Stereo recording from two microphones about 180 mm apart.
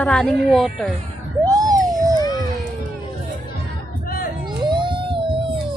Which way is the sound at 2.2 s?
20° left (ahead or behind).